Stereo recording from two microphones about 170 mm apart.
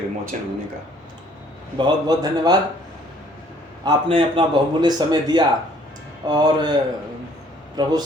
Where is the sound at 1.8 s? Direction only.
25° right (ahead or behind).